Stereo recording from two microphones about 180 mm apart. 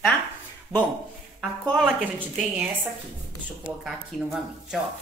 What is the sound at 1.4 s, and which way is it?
Speech, centre (ahead or behind).